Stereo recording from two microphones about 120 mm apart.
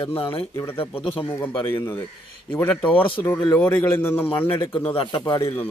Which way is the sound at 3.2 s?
25° left (ahead or behind).